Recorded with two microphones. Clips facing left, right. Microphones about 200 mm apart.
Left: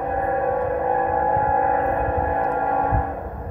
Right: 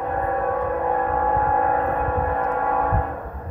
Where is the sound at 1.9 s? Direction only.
30° left (ahead or behind).